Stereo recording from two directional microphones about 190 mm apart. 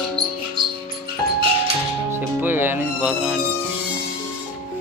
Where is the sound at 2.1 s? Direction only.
10° right (ahead or behind).